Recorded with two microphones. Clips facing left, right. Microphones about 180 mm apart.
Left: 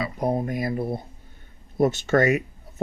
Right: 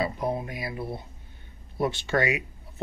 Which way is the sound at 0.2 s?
40° left (ahead or behind).